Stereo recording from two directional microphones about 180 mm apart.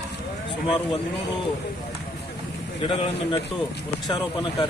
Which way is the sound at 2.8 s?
30° left (ahead or behind).